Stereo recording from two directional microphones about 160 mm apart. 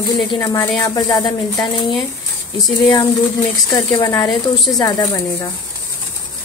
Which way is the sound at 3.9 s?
20° left (ahead or behind).